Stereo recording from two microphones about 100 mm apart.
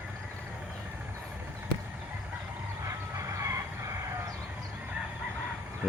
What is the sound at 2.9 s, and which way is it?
Chicken, 30° right (ahead or behind).